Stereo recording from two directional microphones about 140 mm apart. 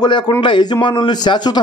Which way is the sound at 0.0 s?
30° left (ahead or behind).